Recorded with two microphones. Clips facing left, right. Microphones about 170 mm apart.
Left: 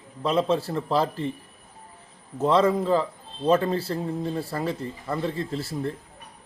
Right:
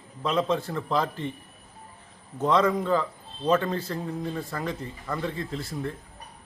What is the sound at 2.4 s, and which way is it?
Speech, 30° left (ahead or behind).